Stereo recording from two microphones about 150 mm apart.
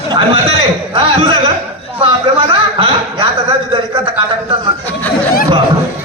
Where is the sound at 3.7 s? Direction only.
35° right (ahead or behind).